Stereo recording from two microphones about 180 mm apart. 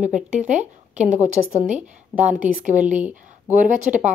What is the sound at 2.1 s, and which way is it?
Speech, 20° left (ahead or behind).